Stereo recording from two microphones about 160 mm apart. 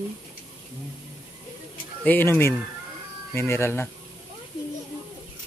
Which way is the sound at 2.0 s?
10° left (ahead or behind).